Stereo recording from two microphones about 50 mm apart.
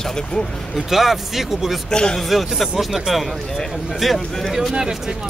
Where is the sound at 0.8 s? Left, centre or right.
Centre.